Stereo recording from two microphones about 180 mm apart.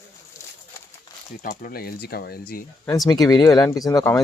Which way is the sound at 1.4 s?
45° left (ahead or behind).